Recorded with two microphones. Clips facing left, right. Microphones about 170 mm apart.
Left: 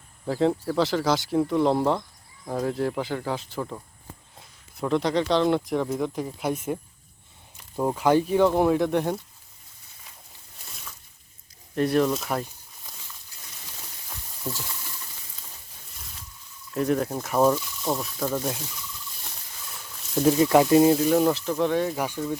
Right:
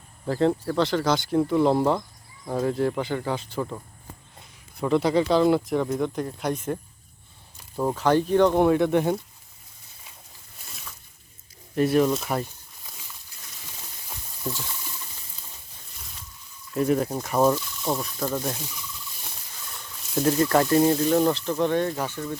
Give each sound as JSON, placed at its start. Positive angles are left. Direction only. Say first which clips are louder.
{"t": 0.3, "sound": "speech", "louder": "right 1 dB", "side_deg": 0}
{"t": 7.8, "sound": "speech", "louder": "even", "side_deg": 10}
{"t": 11.7, "sound": "speech", "louder": "right 2 dB", "side_deg": -5}
{"t": 16.7, "sound": "speech", "louder": "right 1 dB", "side_deg": -5}
{"t": 19.6, "sound": "speech", "louder": "even", "side_deg": 0}